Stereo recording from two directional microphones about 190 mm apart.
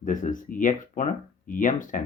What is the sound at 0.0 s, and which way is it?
Speech, 45° left (ahead or behind).